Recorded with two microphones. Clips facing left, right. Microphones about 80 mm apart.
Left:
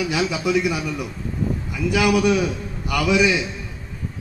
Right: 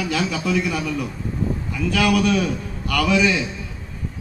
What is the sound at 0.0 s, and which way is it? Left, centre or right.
A man's voice, centre.